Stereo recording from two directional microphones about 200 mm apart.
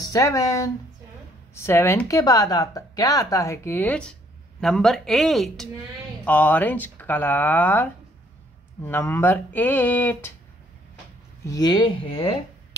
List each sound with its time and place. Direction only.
0.1 s speech: 15° left (ahead or behind)
11.4 s speech: 20° left (ahead or behind)